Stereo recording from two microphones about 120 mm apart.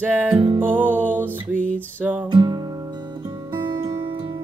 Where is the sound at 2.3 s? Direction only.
40° right (ahead or behind).